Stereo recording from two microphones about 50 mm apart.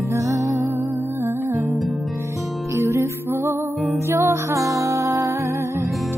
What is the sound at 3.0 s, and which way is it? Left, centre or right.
Music, right.